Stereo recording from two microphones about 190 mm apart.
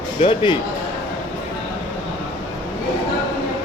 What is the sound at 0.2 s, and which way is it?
Speech, 25° left (ahead or behind).